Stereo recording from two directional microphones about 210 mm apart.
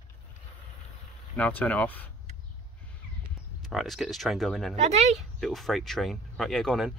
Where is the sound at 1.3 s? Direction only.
5° left (ahead or behind).